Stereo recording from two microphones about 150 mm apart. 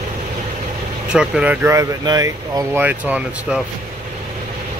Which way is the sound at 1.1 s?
5° right (ahead or behind).